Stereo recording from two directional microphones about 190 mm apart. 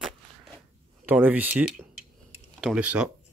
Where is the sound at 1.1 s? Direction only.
10° right (ahead or behind).